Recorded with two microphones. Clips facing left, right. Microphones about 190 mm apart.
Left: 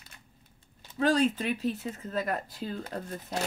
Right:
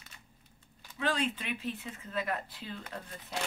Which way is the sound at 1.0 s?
40° left (ahead or behind).